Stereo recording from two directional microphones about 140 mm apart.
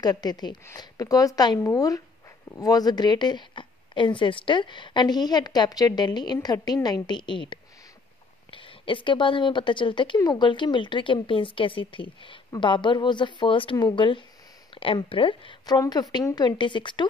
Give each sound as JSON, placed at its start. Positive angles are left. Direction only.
{"t": 0.0, "sound": "speech", "side_deg": 30}